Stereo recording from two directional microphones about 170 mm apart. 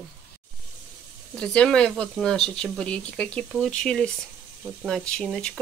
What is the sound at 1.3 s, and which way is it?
Speech, 5° left (ahead or behind).